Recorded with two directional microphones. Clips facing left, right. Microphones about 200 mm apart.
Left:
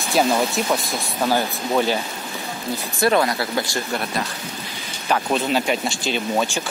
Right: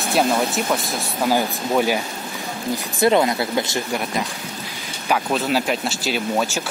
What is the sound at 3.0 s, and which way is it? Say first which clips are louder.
Speech: right 2 dB; 20° right (ahead or behind).